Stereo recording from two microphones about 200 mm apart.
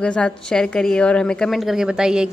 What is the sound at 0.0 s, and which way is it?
A woman's voice, 5° left (ahead or behind).